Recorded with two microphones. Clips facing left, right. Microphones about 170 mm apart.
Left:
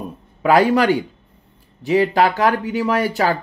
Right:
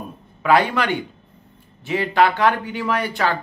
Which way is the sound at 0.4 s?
40° left (ahead or behind).